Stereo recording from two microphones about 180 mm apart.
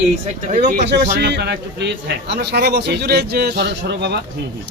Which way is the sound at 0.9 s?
70° right (ahead or behind).